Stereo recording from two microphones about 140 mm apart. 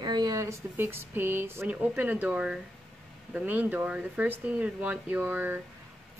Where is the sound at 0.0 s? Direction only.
30° right (ahead or behind).